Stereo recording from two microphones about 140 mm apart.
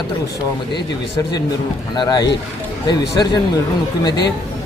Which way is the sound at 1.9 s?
30° left (ahead or behind).